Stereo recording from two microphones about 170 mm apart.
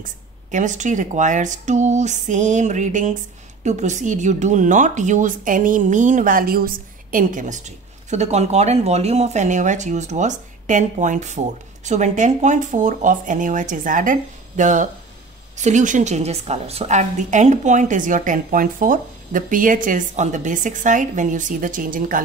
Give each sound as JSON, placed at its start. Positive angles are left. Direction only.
{"t": 0.5, "sound": "speech", "side_deg": -45}